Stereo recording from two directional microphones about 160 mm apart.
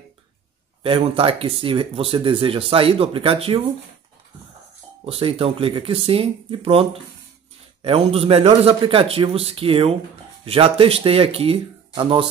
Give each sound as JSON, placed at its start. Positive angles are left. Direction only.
{"t": 0.8, "sound": "speech", "side_deg": -35}
{"t": 5.0, "sound": "speech", "side_deg": -35}